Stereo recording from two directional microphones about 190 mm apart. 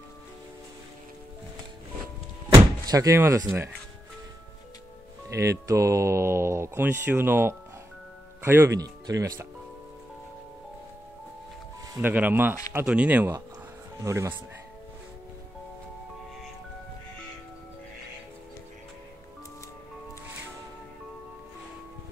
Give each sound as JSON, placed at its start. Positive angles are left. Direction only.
{"t": 2.9, "sound": "speech", "side_deg": -15}
{"t": 5.3, "sound": "speech", "side_deg": -15}
{"t": 12.0, "sound": "speech", "side_deg": -10}